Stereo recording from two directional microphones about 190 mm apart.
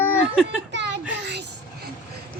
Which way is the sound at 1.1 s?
65° right (ahead or behind).